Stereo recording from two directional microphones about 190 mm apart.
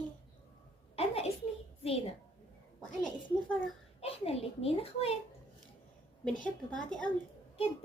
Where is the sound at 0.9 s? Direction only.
30° left (ahead or behind).